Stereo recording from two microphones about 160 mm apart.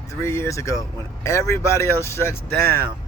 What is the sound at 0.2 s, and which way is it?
Speech, 15° left (ahead or behind).